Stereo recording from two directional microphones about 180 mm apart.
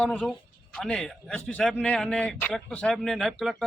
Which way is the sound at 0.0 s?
5° left (ahead or behind).